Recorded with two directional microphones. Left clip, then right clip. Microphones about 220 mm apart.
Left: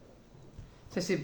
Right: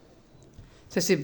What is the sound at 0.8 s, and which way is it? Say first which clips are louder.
Speech: right 7 dB; 50° right (ahead or behind).